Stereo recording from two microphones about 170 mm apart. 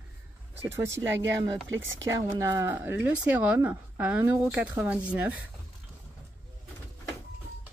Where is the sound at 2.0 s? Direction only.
20° right (ahead or behind).